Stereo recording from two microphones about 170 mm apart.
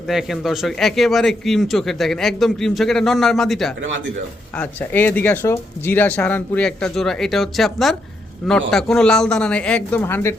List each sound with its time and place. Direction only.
0.1 s a man's voice: centre (ahead or behind)